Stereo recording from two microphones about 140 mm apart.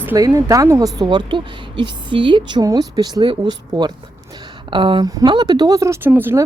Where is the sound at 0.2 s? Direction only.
25° right (ahead or behind).